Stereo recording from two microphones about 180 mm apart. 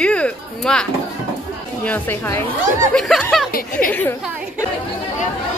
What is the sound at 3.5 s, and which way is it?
Speech, 55° left (ahead or behind).